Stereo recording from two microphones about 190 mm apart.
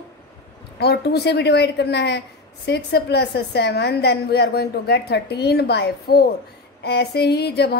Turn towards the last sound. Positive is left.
turn(degrees=55)  # may be behind; listen again after turning